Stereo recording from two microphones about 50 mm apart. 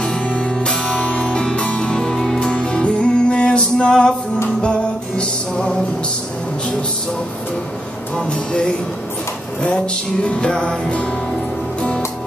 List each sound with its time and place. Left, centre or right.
0.0 s music: centre
8.2 s music: centre
10.2 s music: left